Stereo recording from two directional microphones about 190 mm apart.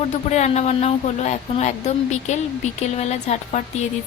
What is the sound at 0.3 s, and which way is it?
A woman's voice, 35° left (ahead or behind).